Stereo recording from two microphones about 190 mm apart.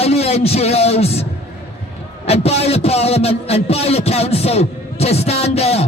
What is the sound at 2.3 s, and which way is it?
A man's voice, 35° left (ahead or behind).